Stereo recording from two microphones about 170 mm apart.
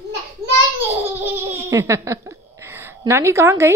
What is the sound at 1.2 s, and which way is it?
Laughter, 15° right (ahead or behind).